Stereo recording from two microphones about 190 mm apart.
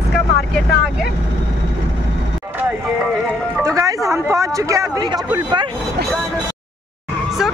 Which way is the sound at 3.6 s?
15° right (ahead or behind).